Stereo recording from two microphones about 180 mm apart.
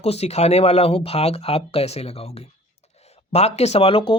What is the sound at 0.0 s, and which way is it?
Speech, 35° left (ahead or behind).